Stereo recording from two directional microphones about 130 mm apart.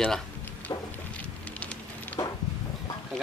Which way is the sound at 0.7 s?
30° left (ahead or behind).